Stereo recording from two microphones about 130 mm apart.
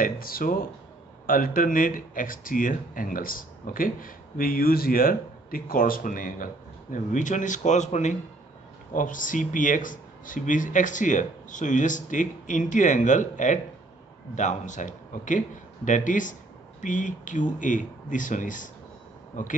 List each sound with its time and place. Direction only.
0.0 s speech: 90° left; by 8.2 s 65° left (ahead or behind)
8.9 s speech: 90° left